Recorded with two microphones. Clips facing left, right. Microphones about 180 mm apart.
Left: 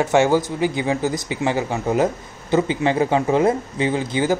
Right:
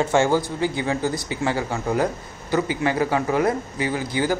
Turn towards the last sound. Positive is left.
turn(degrees=20)  # may be behind; listen again after turning